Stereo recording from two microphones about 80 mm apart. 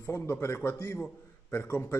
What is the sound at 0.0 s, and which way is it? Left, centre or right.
A man's voice, left.